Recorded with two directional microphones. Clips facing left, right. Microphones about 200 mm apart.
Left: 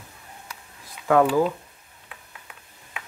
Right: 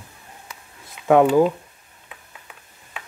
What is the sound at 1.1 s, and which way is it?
Speech, 20° right (ahead or behind).